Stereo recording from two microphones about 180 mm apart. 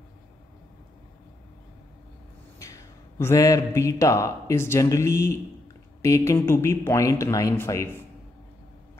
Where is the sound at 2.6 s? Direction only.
15° left (ahead or behind).